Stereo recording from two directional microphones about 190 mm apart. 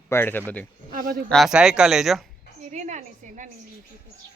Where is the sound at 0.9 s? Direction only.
45° right (ahead or behind).